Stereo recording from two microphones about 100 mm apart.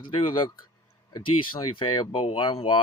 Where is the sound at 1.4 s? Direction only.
55° left (ahead or behind).